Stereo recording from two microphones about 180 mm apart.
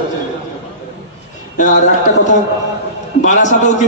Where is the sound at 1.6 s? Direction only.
45° left (ahead or behind).